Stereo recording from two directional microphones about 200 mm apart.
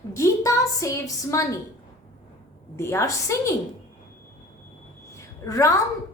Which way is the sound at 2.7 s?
15° left (ahead or behind).